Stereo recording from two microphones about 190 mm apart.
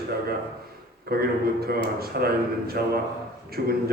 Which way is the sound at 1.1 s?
55° right (ahead or behind).